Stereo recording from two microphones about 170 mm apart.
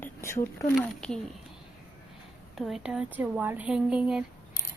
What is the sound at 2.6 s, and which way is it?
Speech, 5° right (ahead or behind).